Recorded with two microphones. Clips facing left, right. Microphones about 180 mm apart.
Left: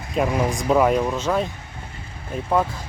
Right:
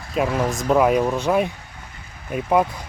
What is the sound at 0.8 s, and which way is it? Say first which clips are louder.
Speech: right 3 dB; 10° right (ahead or behind).